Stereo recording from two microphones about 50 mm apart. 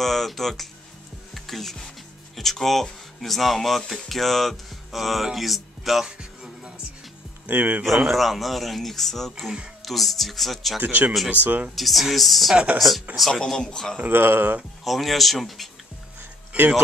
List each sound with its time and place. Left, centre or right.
0.0 s speech: centre
1.3 s music: centre
2.3 s speech: centre
6.0 s music: centre
7.4 s speech: right
8.1 s speech: centre
10.8 s speech: right
11.7 s speech: centre
13.3 s speech: centre
14.0 s speech: right
14.9 s speech: centre
16.5 s speech: right